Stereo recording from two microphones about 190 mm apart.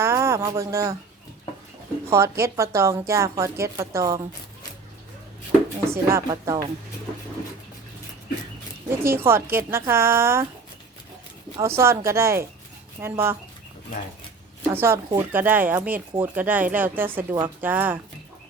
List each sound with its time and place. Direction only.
0.0 s music: 15° right (ahead or behind)
2.0 s a woman's voice: 15° right (ahead or behind)
5.8 s a woman's voice: 15° right (ahead or behind)
8.9 s a woman's voice: 10° right (ahead or behind)
11.6 s a woman's voice: 15° right (ahead or behind)
14.7 s a woman's voice: 10° right (ahead or behind)
17.2 s speech: 20° right (ahead or behind)
17.6 s a woman's voice: 10° right (ahead or behind)